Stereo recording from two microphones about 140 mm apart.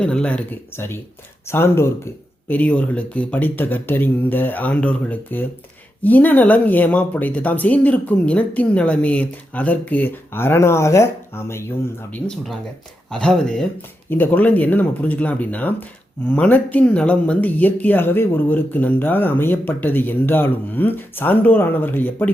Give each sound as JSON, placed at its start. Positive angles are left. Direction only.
{"t": 0.0, "sound": "speech", "side_deg": 5}
{"t": 12.1, "sound": "speech", "side_deg": 0}